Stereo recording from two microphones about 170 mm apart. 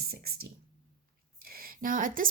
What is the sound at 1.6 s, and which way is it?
Speech, 55° right (ahead or behind).